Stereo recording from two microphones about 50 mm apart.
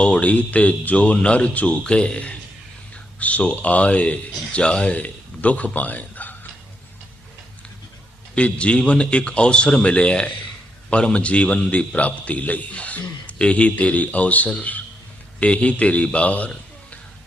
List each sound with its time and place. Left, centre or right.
0.0 s a man's voice: left
8.4 s a man's voice: left